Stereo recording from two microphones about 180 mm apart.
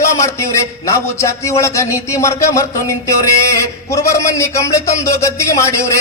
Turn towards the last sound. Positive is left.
turn(degrees=15)  # may be behind; listen again after turning